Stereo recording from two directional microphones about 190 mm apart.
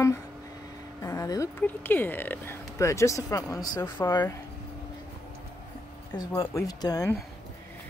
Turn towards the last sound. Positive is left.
turn(degrees=20)  # may be behind; listen again after turning